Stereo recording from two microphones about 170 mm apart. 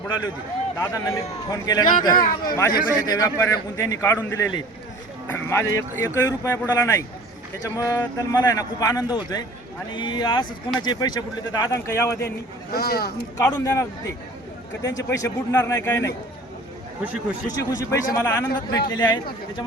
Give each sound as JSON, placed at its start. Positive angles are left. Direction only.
{"t": 0.8, "sound": "speech", "side_deg": 20}
{"t": 2.1, "sound": "speech", "side_deg": 60}
{"t": 3.1, "sound": "a man's voice", "side_deg": 20}
{"t": 12.7, "sound": "speech", "side_deg": 65}
{"t": 13.3, "sound": "speech", "side_deg": 20}
{"t": 17.6, "sound": "speech", "side_deg": 20}